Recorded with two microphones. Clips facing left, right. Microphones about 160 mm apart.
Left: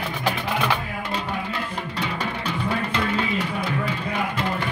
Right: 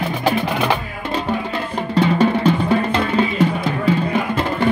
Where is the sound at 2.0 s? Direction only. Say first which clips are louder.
Right 15 dB; 30° right (ahead or behind).